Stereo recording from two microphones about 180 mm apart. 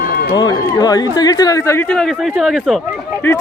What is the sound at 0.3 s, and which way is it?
Speech, 20° left (ahead or behind).